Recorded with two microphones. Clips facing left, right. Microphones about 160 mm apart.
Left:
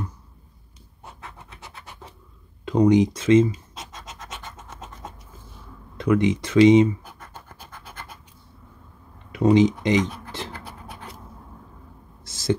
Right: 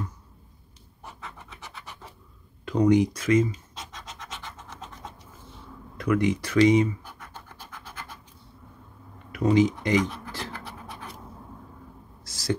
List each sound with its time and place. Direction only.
2.6 s speech: 20° left (ahead or behind)
5.9 s speech: 25° left (ahead or behind)
9.3 s speech: 25° left (ahead or behind)
12.3 s a sound: 25° left (ahead or behind)